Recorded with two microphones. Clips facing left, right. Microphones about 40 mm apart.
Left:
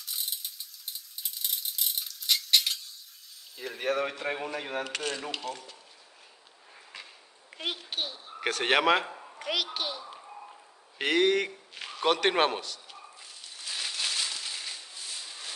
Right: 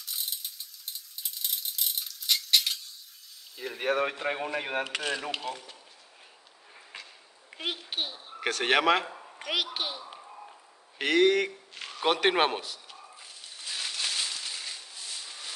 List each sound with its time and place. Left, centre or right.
0.0 s rattle: centre
3.5 s speech: centre
4.5 s speech: right
4.8 s speech: centre
7.5 s a child's voice: centre
8.4 s speech: centre
9.4 s a woman's voice: centre
11.0 s a man's voice: centre
12.0 s a sound: centre